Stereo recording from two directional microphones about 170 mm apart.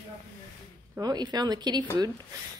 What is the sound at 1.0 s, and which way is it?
Speech, 25° right (ahead or behind).